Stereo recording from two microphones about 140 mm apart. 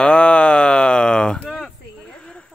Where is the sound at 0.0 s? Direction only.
5° left (ahead or behind).